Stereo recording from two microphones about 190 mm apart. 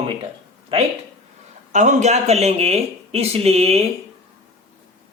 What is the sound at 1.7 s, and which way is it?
Speech, 40° right (ahead or behind).